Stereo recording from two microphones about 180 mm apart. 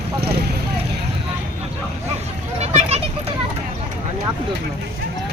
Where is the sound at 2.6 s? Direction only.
35° right (ahead or behind).